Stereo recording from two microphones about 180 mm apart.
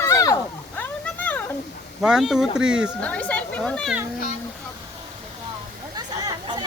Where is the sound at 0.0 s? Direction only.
15° left (ahead or behind).